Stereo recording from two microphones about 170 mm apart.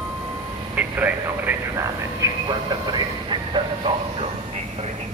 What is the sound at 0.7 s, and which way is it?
Vehicle, 10° right (ahead or behind).